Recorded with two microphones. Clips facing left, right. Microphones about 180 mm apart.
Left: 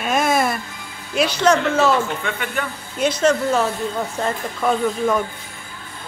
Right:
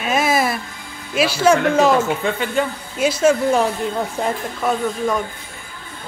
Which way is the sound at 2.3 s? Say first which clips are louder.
Right 6 dB; 30° right (ahead or behind).